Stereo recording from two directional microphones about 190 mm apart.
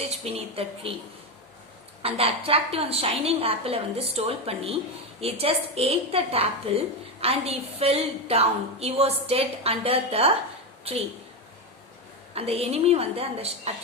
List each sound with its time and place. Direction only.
0.0 s a woman's voice: 35° right (ahead or behind)
2.0 s a woman's voice: 30° right (ahead or behind)
12.3 s a woman's voice: 30° right (ahead or behind)